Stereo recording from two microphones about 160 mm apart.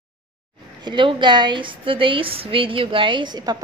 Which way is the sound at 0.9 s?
30° right (ahead or behind).